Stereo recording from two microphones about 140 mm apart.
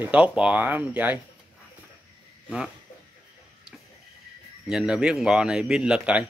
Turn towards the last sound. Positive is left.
turn(degrees=-5)  # may be behind; listen again after turning